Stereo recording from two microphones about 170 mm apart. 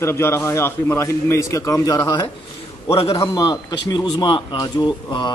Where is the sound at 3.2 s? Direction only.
20° left (ahead or behind).